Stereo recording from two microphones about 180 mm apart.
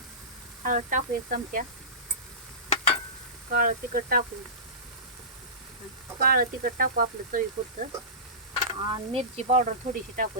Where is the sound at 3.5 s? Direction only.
55° right (ahead or behind).